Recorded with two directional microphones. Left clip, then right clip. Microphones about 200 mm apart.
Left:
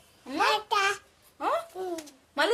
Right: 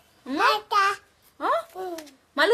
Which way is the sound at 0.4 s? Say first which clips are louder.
Right 4 dB; centre (ahead or behind).